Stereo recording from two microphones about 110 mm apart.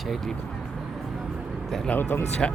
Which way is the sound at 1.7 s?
5° left (ahead or behind).